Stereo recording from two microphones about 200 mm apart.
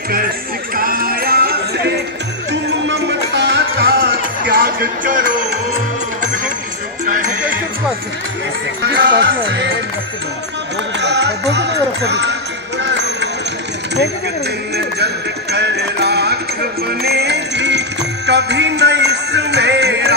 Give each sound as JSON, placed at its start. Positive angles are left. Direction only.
{"t": 0.7, "sound": "music", "side_deg": -45}
{"t": 8.8, "sound": "music", "side_deg": -55}
{"t": 11.0, "sound": "music", "side_deg": -60}
{"t": 15.5, "sound": "music", "side_deg": -55}